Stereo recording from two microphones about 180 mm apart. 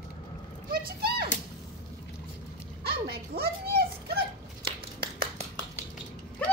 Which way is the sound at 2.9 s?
60° right (ahead or behind).